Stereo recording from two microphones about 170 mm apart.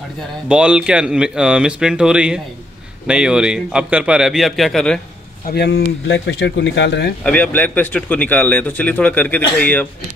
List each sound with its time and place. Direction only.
0.5 s speech: 5° right (ahead or behind)
5.5 s speech: 70° left (ahead or behind)
6.2 s speech: 90° left
7.2 s a man's voice: 10° left (ahead or behind)